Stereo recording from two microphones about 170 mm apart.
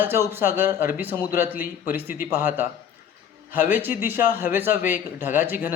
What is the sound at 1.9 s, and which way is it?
Speech, 10° right (ahead or behind).